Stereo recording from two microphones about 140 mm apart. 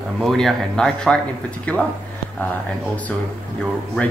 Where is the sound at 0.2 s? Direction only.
Centre (ahead or behind).